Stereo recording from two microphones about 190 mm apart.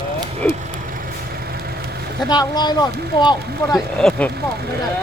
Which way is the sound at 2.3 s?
20° left (ahead or behind).